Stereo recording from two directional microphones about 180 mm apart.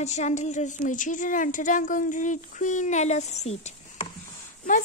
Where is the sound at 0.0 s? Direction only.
40° left (ahead or behind).